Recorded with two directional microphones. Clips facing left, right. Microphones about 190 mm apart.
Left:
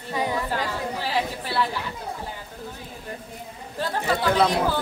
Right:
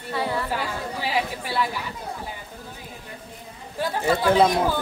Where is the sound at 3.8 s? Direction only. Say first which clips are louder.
Right 2 dB; 10° right (ahead or behind).